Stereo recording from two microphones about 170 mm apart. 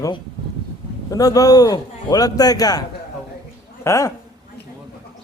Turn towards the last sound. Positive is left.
turn(degrees=15)  # may be behind; listen again after turning